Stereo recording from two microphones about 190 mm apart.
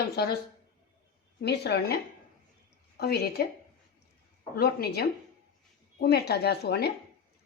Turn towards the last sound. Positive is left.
turn(degrees=55)  # may be behind; listen again after turning